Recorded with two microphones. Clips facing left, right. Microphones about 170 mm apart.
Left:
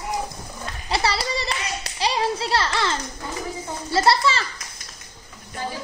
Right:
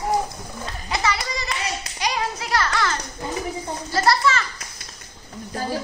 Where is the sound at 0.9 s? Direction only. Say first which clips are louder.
Left 2 dB; 35° left (ahead or behind).